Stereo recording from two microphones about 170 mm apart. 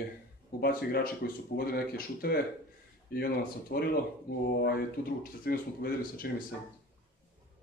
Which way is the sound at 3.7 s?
70° left (ahead or behind).